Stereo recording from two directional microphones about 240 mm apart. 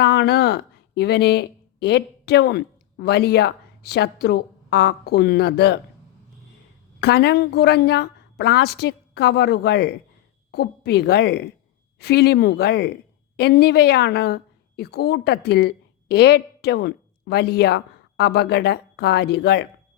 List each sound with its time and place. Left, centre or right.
0.0 s speech: left
7.0 s a woman's voice: left